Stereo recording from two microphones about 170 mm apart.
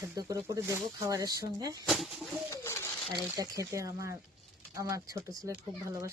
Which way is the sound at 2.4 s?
15° left (ahead or behind).